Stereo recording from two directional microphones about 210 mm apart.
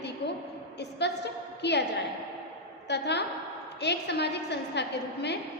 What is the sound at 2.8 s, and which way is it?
A woman's voice, 55° left (ahead or behind).